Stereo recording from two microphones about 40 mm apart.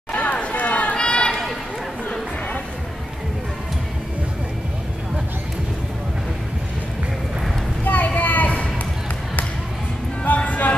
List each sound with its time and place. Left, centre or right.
0.1 s run: left
7.8 s a sound: left
10.2 s music: left